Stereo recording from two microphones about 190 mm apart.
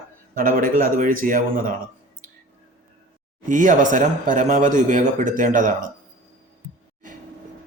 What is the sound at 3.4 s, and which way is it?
A man's voice, 40° right (ahead or behind).